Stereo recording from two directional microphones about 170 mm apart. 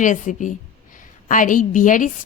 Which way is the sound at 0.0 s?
50° left (ahead or behind).